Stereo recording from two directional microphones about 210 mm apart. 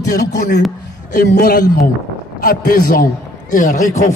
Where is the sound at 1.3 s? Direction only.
50° left (ahead or behind).